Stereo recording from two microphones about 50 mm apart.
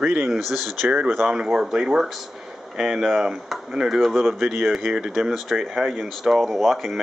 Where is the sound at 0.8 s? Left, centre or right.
Right.